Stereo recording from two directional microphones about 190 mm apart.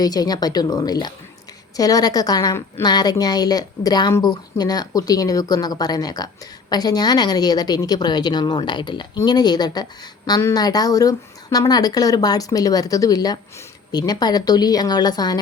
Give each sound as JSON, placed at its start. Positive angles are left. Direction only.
{"t": 0.0, "sound": "a woman's voice", "side_deg": 20}